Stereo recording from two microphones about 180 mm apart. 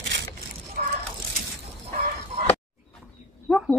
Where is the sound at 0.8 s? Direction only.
45° right (ahead or behind).